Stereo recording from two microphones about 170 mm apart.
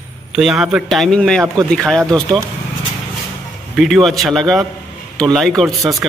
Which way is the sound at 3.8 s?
Centre (ahead or behind).